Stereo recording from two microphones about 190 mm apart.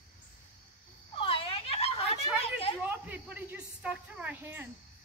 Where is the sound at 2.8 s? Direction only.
10° right (ahead or behind).